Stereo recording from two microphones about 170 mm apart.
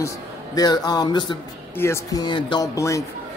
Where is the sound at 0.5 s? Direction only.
25° left (ahead or behind).